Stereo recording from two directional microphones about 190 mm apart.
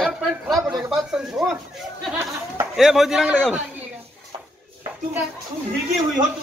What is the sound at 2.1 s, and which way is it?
Speech, 15° right (ahead or behind).